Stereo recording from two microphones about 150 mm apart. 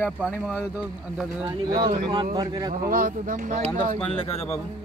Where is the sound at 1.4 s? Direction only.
30° right (ahead or behind).